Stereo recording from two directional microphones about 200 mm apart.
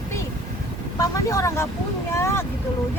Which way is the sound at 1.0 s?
15° left (ahead or behind).